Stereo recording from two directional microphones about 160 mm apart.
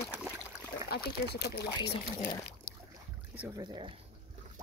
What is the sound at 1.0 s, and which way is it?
Speech, 90° left.